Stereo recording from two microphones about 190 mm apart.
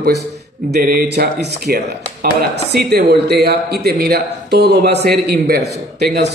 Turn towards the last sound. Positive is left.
turn(degrees=-60)  # may be behind; listen again after turning